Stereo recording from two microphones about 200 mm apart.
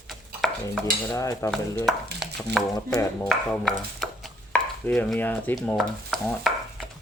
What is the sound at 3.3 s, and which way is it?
Speech, centre (ahead or behind).